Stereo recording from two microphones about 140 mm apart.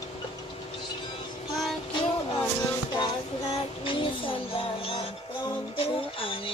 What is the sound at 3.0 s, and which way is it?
Child singing, 40° left (ahead or behind).